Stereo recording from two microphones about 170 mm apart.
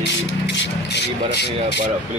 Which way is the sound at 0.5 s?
85° left.